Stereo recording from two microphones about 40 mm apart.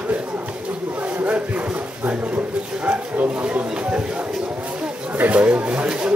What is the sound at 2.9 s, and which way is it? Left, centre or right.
Bow-wow, right.